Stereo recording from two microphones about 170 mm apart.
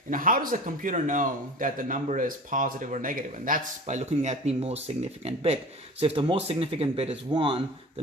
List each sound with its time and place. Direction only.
0.1 s a man's voice: 55° right (ahead or behind); by 8.0 s 30° right (ahead or behind)